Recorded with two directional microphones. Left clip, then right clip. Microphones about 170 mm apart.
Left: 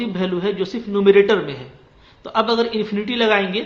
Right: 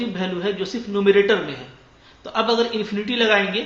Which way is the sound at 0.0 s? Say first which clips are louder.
Left 3 dB; 30° left (ahead or behind).